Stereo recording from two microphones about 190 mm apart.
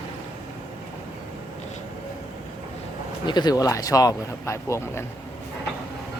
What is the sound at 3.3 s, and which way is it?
Speech, 20° left (ahead or behind).